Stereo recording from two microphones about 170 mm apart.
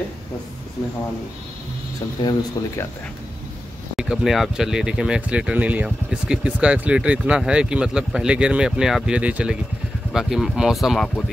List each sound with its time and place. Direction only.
2.2 s speech: 25° left (ahead or behind)
3.9 s speech: 5° right (ahead or behind)